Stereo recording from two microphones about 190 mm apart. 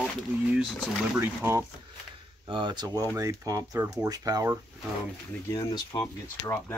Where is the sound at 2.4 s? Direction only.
25° right (ahead or behind).